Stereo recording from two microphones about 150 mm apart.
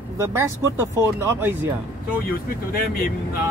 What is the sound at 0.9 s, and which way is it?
Speech, 15° right (ahead or behind).